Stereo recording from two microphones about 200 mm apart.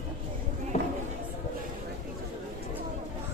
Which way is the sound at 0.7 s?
30° left (ahead or behind).